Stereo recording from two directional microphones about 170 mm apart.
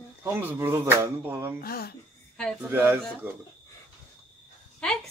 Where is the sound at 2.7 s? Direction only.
15° right (ahead or behind).